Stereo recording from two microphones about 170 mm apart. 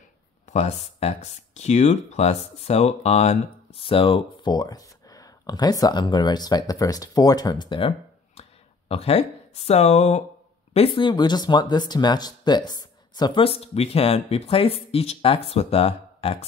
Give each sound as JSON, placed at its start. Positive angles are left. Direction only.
{"t": 0.5, "sound": "speech", "side_deg": 40}
{"t": 8.4, "sound": "a sound", "side_deg": 35}
{"t": 10.7, "sound": "speech", "side_deg": 30}